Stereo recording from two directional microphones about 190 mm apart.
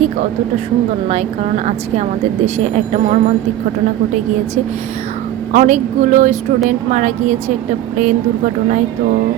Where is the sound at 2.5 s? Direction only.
35° right (ahead or behind).